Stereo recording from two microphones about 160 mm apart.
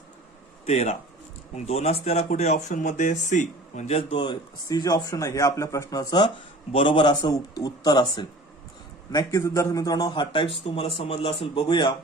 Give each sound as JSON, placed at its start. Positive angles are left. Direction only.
{"t": 0.6, "sound": "a man's voice", "side_deg": 45}